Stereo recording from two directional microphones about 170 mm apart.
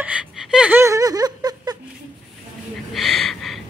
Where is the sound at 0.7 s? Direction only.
20° right (ahead or behind).